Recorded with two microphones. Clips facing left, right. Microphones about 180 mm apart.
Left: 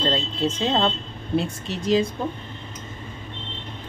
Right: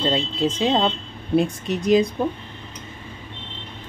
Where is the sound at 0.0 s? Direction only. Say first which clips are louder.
Right 2 dB; 10° right (ahead or behind).